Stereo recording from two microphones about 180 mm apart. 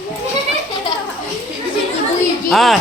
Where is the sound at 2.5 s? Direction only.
Centre (ahead or behind).